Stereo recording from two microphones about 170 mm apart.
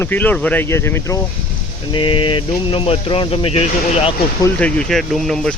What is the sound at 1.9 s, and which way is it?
Speech, 30° left (ahead or behind).